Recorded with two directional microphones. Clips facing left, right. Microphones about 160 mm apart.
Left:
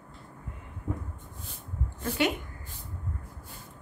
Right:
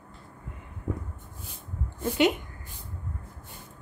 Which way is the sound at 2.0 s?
20° right (ahead or behind).